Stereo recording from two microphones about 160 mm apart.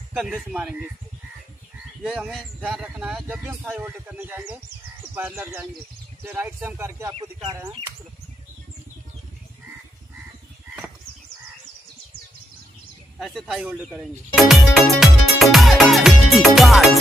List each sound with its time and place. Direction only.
0.1 s speech: centre (ahead or behind)
2.0 s speech: 5° right (ahead or behind)
7.1 s speech: 30° right (ahead or behind)
13.2 s speech: centre (ahead or behind)